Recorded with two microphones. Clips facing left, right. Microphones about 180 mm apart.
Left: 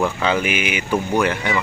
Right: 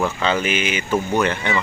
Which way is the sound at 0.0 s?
10° left (ahead or behind).